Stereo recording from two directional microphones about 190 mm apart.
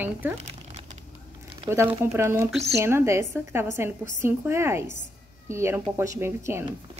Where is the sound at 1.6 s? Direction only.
15° right (ahead or behind).